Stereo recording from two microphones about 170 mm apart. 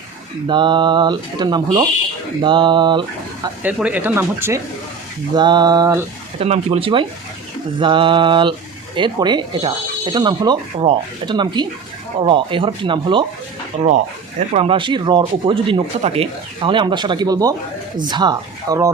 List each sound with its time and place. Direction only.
0.4 s speech: 25° right (ahead or behind)
3.6 s speech: 10° right (ahead or behind)
5.3 s speech: 25° right (ahead or behind)
6.4 s speech: 35° right (ahead or behind)
13.8 s speech: 45° right (ahead or behind); by 18.9 s 25° right (ahead or behind)